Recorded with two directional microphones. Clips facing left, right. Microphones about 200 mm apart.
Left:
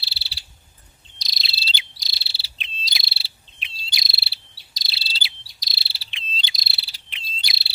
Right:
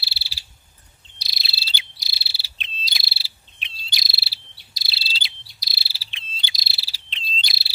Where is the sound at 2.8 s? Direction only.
5° right (ahead or behind).